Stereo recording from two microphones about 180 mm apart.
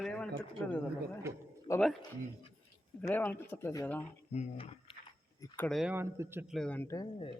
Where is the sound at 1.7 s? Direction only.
25° left (ahead or behind).